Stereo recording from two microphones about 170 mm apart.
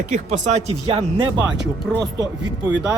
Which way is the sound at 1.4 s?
5° right (ahead or behind).